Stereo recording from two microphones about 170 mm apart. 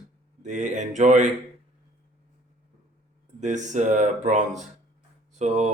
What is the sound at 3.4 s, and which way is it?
Speech, 45° right (ahead or behind).